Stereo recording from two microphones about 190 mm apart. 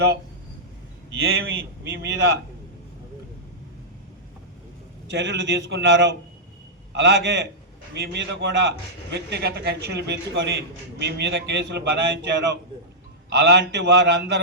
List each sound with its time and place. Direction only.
1.3 s a man's voice: 65° right (ahead or behind)
5.1 s a man's voice: 65° right (ahead or behind)